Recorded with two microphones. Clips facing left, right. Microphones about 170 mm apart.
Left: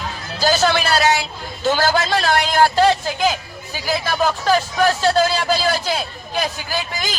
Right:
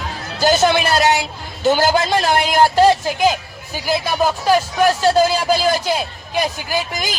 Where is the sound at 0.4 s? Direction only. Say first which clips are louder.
Right 3 dB; 20° right (ahead or behind).